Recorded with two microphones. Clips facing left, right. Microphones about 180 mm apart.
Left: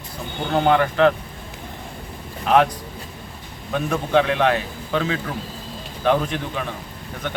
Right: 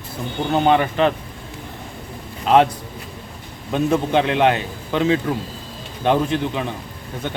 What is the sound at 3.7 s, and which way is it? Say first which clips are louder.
A man's voice: right 2 dB; 25° right (ahead or behind).